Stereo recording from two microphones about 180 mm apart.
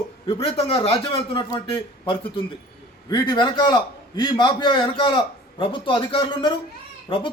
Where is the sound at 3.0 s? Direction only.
25° left (ahead or behind).